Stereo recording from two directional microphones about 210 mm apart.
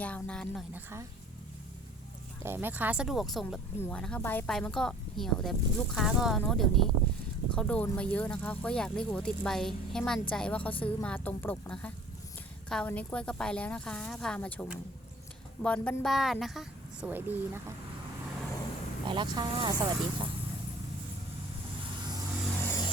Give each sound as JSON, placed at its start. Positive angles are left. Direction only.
{"t": 0.0, "sound": "speech", "side_deg": 5}
{"t": 0.7, "sound": "a woman's voice", "side_deg": -10}
{"t": 2.4, "sound": "a woman's voice", "side_deg": -10}
{"t": 19.0, "sound": "speech", "side_deg": -20}
{"t": 22.6, "sound": "vehicle", "side_deg": 15}